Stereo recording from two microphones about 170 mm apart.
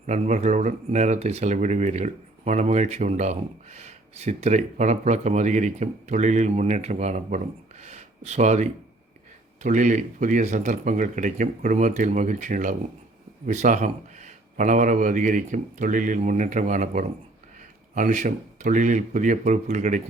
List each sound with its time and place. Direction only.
0.0 s speech: 45° right (ahead or behind)